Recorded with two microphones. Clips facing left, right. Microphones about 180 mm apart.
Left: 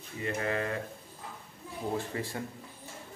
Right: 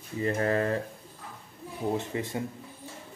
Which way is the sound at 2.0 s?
20° right (ahead or behind).